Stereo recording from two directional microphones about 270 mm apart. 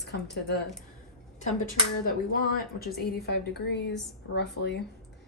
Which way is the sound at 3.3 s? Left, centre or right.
Left.